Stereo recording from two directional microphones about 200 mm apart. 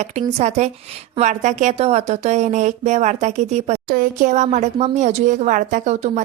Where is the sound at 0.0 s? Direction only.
35° right (ahead or behind).